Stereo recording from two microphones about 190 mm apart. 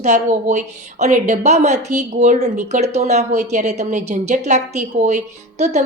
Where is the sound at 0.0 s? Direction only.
35° right (ahead or behind).